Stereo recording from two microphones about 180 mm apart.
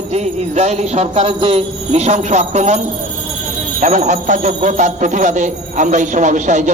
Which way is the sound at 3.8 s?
40° right (ahead or behind).